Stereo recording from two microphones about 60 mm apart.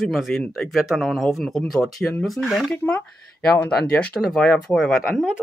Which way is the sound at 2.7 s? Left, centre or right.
Left.